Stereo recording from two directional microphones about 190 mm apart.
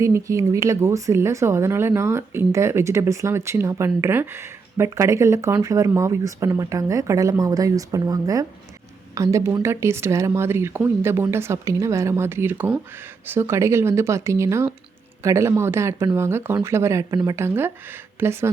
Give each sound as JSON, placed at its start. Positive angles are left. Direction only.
{"t": 0.0, "sound": "a woman's voice", "side_deg": -15}